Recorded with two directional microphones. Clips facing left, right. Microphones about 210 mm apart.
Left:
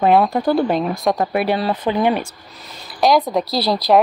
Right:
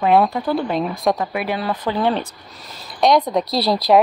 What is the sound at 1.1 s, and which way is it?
Speech, 45° left (ahead or behind).